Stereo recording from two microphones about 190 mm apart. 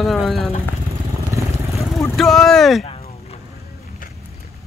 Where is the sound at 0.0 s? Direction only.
Centre (ahead or behind).